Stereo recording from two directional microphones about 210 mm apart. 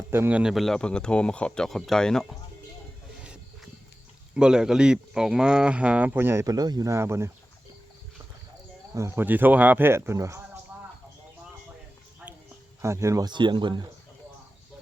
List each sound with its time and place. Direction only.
0.1 s speech: 10° right (ahead or behind)
4.4 s speech: 5° right (ahead or behind)
9.0 s speech: 10° right (ahead or behind)
12.8 s speech: 15° right (ahead or behind)